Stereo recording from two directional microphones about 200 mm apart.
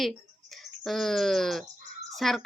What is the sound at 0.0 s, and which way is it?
Speech, centre (ahead or behind).